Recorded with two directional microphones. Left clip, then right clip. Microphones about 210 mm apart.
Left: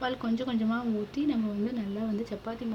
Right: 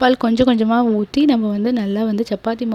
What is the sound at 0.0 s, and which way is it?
Speech, 50° right (ahead or behind).